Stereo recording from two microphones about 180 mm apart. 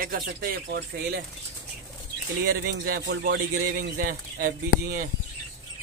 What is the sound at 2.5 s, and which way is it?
Speech, 75° right (ahead or behind).